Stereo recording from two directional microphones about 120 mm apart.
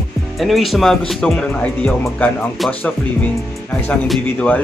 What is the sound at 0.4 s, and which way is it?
Speech, centre (ahead or behind).